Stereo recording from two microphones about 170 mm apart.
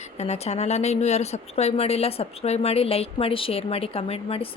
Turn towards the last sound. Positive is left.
turn(degrees=35)  # may be behind; listen again after turning